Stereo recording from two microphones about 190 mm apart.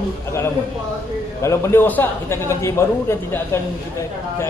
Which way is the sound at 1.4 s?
15° left (ahead or behind).